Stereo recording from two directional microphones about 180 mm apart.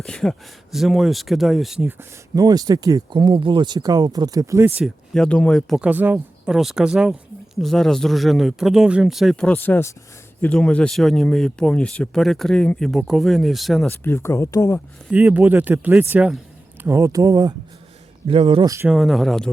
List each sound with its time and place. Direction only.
0.0 s speech: 5° left (ahead or behind)
2.3 s speech: 20° right (ahead or behind)
4.8 s speech: 5° left (ahead or behind)
15.1 s speech: 10° right (ahead or behind); by 18.7 s 30° right (ahead or behind)
18.9 s speech: centre (ahead or behind)